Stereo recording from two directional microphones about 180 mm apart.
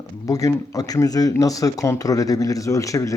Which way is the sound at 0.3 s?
20° left (ahead or behind).